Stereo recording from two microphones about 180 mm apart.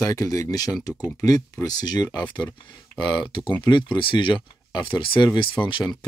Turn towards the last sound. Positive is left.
turn(degrees=25)  # may be behind; listen again after turning